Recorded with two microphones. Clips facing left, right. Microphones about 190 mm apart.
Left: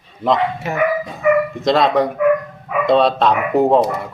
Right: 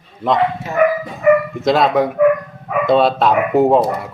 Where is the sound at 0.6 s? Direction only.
65° left (ahead or behind).